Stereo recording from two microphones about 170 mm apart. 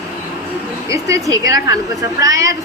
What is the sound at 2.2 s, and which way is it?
Speech, 20° right (ahead or behind).